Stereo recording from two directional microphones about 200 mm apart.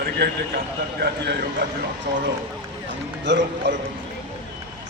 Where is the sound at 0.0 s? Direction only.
55° right (ahead or behind).